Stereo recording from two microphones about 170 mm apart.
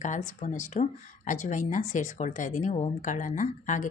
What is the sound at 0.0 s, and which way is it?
Speech, 45° left (ahead or behind).